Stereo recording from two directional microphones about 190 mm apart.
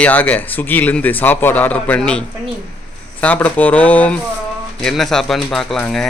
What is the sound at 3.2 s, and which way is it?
Speech, 10° left (ahead or behind).